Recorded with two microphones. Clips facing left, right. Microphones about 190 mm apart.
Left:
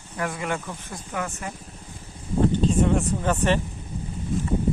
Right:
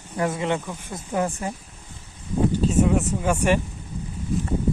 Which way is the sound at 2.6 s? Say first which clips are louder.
Right 1 dB; 5° right (ahead or behind).